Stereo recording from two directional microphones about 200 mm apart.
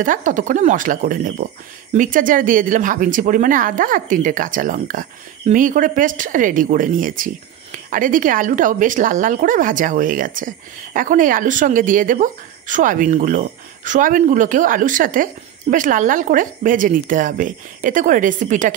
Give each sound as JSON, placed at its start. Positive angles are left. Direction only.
{"t": 0.0, "sound": "speech", "side_deg": -40}